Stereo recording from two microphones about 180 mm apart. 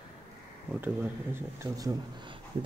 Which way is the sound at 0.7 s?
10° right (ahead or behind).